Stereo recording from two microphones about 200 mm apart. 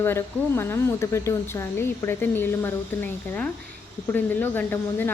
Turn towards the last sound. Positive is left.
turn(degrees=10)  # may be behind; listen again after turning